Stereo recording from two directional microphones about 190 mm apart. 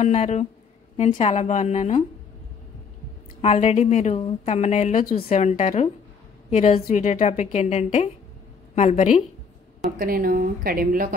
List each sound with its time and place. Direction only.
0.0 s a woman's voice: 35° left (ahead or behind)
3.3 s a woman's voice: 35° left (ahead or behind)
9.9 s a woman's voice: 50° right (ahead or behind)